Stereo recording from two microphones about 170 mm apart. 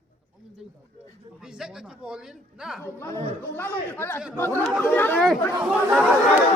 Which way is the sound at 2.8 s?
15° left (ahead or behind).